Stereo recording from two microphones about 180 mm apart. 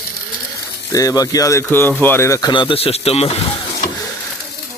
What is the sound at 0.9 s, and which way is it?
Speech, 20° left (ahead or behind).